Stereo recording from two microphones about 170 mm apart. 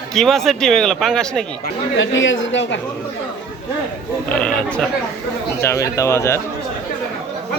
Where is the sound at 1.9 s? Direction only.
90° left.